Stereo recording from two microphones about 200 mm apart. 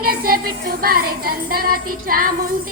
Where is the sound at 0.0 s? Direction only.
50° right (ahead or behind).